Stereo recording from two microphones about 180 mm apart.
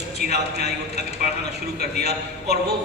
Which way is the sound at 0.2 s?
65° right (ahead or behind).